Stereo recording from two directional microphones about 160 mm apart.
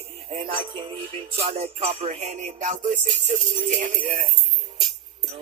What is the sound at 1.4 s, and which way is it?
Music, 40° right (ahead or behind).